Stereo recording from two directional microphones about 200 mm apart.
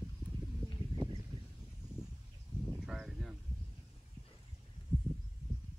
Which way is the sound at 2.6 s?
5° right (ahead or behind).